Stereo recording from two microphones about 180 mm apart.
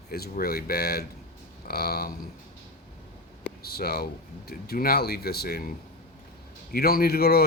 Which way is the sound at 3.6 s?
60° left (ahead or behind).